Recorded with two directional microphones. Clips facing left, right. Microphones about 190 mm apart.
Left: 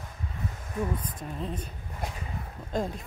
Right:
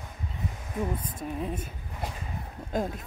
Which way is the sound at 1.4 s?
10° right (ahead or behind).